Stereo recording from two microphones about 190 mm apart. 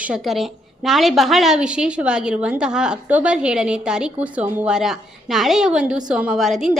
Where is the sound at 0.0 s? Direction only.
5° right (ahead or behind).